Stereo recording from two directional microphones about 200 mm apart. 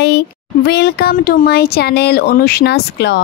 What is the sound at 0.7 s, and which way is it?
Speech, 55° left (ahead or behind).